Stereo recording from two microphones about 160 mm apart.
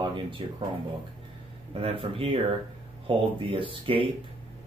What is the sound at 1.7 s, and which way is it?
Speech, 35° right (ahead or behind).